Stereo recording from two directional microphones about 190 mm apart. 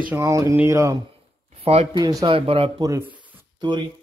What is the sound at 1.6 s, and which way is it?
Speech, 30° right (ahead or behind).